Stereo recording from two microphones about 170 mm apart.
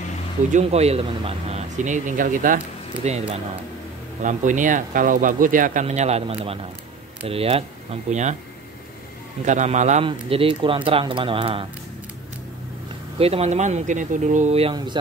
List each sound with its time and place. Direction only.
0.5 s speech: 40° right (ahead or behind)
9.4 s speech: 45° right (ahead or behind)
10.0 s speech: 30° right (ahead or behind)
13.2 s speech: 40° right (ahead or behind)